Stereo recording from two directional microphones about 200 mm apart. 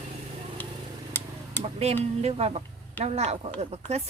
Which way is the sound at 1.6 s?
30° right (ahead or behind).